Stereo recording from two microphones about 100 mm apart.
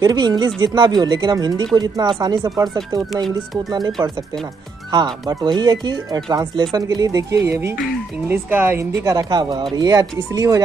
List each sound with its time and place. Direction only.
0.0 s speech: 40° right (ahead or behind)
5.3 s speech: 45° right (ahead or behind); by 8.8 s 20° right (ahead or behind)
9.0 s speech: 40° right (ahead or behind)